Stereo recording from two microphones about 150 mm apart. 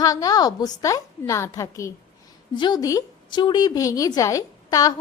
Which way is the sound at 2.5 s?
30° left (ahead or behind).